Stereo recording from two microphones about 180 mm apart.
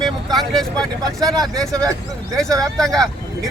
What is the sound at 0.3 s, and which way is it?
Speech, centre (ahead or behind).